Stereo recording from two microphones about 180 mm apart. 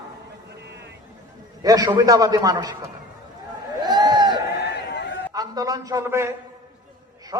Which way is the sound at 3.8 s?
25° right (ahead or behind).